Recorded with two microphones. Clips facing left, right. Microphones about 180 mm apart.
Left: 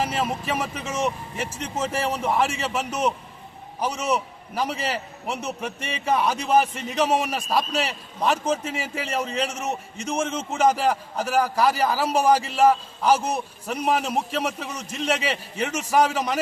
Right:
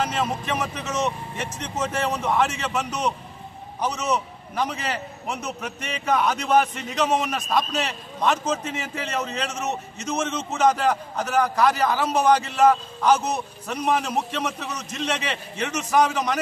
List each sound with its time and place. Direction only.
0.1 s a man's voice: 5° left (ahead or behind)
5.5 s speech: 30° left (ahead or behind)
6.1 s a man's voice: 10° left (ahead or behind)